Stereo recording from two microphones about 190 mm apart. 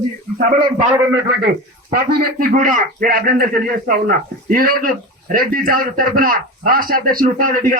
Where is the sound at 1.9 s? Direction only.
50° right (ahead or behind).